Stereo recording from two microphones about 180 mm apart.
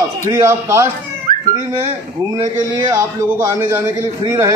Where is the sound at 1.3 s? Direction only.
50° right (ahead or behind).